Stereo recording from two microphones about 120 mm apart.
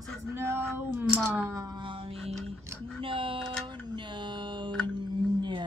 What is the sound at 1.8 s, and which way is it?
Music, 45° right (ahead or behind).